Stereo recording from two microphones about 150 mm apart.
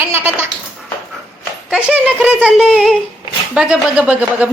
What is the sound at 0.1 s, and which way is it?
Goat, 15° right (ahead or behind).